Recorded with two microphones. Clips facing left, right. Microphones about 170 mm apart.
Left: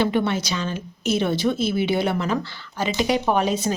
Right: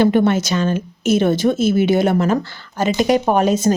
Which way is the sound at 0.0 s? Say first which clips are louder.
Right 7 dB; 50° right (ahead or behind).